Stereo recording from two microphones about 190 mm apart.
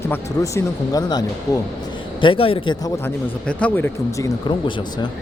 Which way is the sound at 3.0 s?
10° left (ahead or behind).